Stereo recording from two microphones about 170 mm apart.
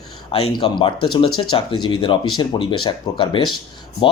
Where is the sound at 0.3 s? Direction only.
30° left (ahead or behind).